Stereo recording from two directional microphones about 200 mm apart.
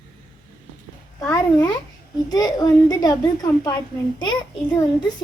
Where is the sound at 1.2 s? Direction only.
15° left (ahead or behind).